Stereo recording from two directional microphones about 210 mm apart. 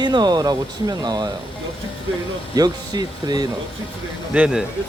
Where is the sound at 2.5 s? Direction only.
20° right (ahead or behind).